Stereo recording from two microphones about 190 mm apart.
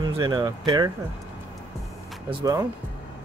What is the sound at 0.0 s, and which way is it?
Speech, 20° right (ahead or behind).